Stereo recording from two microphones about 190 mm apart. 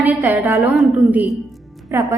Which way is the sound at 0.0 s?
10° right (ahead or behind).